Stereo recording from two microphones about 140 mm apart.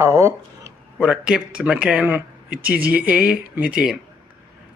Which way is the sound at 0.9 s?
5° right (ahead or behind).